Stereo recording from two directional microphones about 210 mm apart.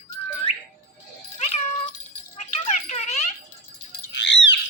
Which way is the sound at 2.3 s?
30° left (ahead or behind).